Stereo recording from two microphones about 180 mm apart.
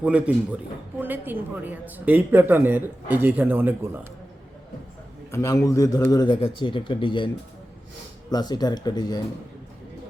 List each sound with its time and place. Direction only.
0.0 s a man's voice: 5° right (ahead or behind)
5.3 s a man's voice: 15° left (ahead or behind)
8.3 s a man's voice: 20° left (ahead or behind)